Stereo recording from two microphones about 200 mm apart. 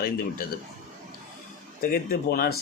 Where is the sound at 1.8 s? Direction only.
45° left (ahead or behind).